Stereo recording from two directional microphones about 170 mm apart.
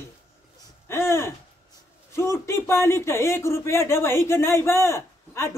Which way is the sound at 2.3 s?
15° left (ahead or behind).